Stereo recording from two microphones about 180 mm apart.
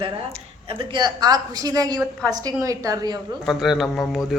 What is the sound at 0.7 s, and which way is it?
A woman's voice, 25° right (ahead or behind).